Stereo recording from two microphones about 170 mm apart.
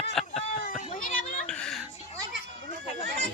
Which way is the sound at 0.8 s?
50° left (ahead or behind).